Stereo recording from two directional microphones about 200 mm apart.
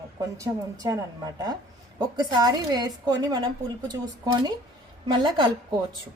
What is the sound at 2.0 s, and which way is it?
A woman's voice, 20° right (ahead or behind).